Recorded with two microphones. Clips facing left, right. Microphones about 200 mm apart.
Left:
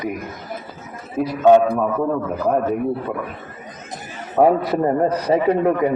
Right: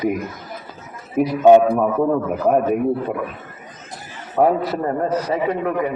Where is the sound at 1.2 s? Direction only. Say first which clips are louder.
Right 2 dB; 15° right (ahead or behind).